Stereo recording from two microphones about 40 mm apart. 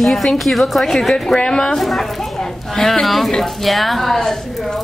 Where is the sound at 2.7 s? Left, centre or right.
Centre.